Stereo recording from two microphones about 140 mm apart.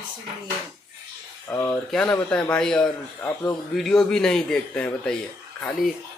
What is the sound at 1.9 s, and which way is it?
Speech, 5° left (ahead or behind).